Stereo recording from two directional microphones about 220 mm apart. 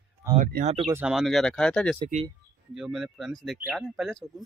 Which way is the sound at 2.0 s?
30° right (ahead or behind).